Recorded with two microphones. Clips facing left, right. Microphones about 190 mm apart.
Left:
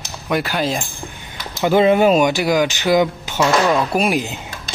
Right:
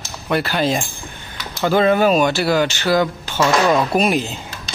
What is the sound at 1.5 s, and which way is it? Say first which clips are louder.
Speech: left 2 dB; 15° left (ahead or behind).